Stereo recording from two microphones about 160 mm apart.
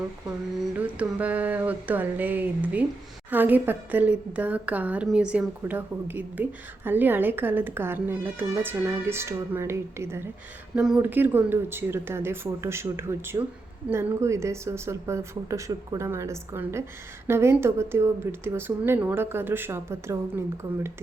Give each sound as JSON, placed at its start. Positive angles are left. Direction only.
{"t": 0.6, "sound": "a woman's voice", "side_deg": -10}
{"t": 10.8, "sound": "a woman's voice", "side_deg": -5}